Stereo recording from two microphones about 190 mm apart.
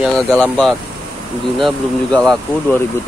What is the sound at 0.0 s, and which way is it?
Speech, 5° left (ahead or behind).